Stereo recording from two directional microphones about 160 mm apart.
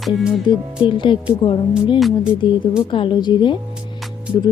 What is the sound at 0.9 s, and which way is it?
A woman's voice, 30° left (ahead or behind).